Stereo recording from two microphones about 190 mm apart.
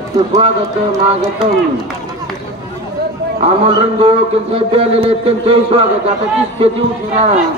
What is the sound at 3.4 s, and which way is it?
A man's voice, 30° right (ahead or behind).